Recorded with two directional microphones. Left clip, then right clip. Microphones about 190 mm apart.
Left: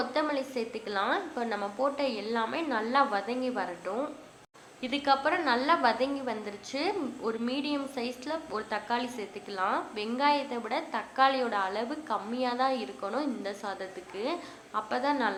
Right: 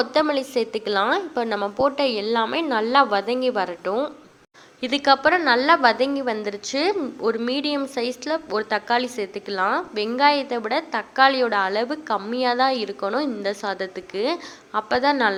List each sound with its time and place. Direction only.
0.0 s a woman's voice: 40° right (ahead or behind)